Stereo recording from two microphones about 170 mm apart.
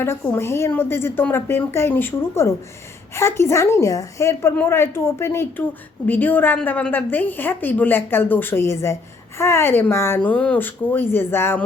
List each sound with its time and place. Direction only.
0.0 s a woman's voice: 15° left (ahead or behind)